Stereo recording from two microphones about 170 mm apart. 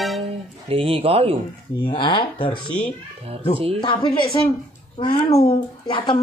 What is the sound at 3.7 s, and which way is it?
A woman's voice, 30° left (ahead or behind).